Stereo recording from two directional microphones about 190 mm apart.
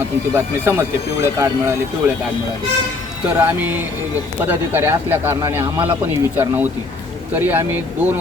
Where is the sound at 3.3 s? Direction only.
10° right (ahead or behind).